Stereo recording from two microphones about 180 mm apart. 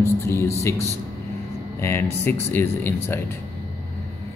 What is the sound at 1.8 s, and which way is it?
Speech, 15° left (ahead or behind).